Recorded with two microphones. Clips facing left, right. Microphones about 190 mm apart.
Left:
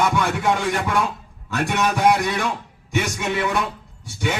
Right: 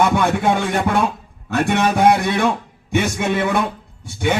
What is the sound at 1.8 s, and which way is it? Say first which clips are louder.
A man's voice: right 3 dB; 65° right (ahead or behind).